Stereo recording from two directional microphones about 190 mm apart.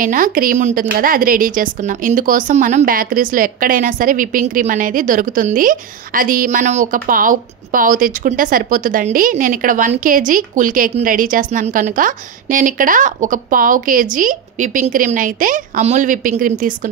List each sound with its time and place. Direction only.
0.0 s a woman's voice: 45° right (ahead or behind)